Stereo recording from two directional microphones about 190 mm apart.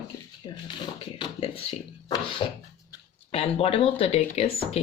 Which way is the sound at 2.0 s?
25° left (ahead or behind).